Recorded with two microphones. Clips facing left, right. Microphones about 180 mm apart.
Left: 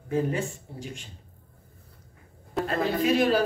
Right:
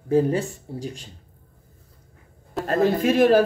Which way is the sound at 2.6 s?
45° right (ahead or behind).